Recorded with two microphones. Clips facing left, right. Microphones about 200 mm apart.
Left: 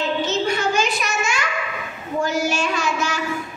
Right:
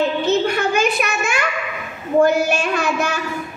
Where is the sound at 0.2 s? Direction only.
60° right (ahead or behind).